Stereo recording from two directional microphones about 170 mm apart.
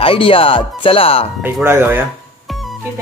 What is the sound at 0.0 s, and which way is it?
Speech, 30° left (ahead or behind).